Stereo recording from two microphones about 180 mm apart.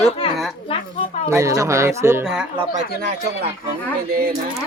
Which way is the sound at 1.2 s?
15° right (ahead or behind).